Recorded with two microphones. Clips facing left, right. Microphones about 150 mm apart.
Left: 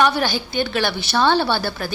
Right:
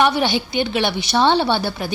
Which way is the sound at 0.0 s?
20° right (ahead or behind).